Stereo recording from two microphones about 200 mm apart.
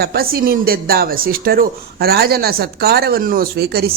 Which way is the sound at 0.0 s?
50° right (ahead or behind).